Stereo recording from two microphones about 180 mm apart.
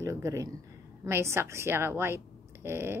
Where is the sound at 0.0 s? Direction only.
15° right (ahead or behind).